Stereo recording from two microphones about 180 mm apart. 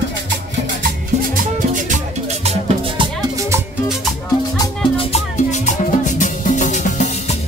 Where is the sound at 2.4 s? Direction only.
30° right (ahead or behind).